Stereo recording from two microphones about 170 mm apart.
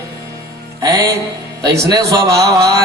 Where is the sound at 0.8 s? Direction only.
20° right (ahead or behind).